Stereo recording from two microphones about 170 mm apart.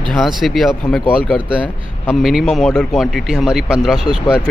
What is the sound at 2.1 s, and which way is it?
Speech, centre (ahead or behind).